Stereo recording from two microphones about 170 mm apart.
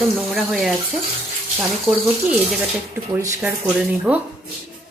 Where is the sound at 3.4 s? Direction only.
5° right (ahead or behind).